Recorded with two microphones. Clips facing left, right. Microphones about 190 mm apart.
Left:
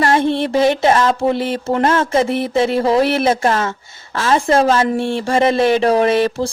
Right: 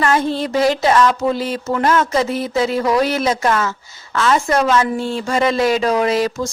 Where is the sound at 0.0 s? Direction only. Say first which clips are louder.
Left 2 dB; 30° left (ahead or behind).